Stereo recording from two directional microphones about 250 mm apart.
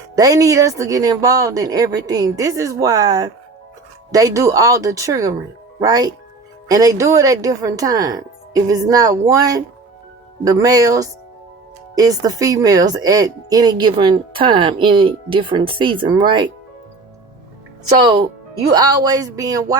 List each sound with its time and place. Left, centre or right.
0.2 s speech: centre
18.7 s speech: centre